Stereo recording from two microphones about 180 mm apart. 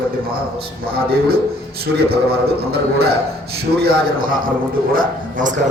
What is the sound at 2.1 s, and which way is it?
A man's voice, 60° right (ahead or behind).